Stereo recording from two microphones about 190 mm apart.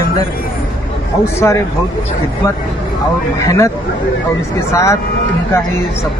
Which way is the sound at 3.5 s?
15° left (ahead or behind).